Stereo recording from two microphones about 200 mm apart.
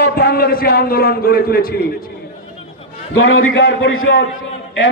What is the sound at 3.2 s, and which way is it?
A man's voice, 70° left (ahead or behind).